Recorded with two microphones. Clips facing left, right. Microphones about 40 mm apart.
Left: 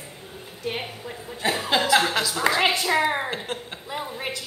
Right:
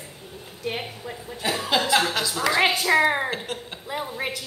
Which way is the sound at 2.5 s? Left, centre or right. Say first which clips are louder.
Even; left.